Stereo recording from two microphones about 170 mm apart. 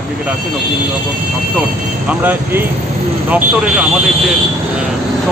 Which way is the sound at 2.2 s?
10° right (ahead or behind).